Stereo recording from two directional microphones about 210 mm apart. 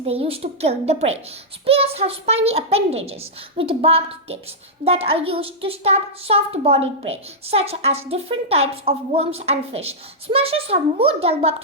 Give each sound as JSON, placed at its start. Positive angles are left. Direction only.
{"t": 0.0, "sound": "a woman's voice", "side_deg": -25}